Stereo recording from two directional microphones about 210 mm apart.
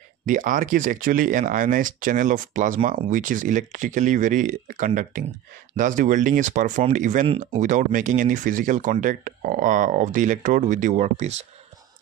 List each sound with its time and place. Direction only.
0.3 s speech: 40° right (ahead or behind)